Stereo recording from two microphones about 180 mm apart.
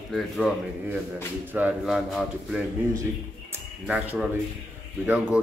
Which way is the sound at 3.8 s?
5° right (ahead or behind).